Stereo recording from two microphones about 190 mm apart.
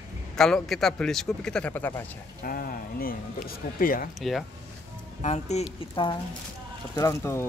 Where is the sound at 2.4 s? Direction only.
50° left (ahead or behind).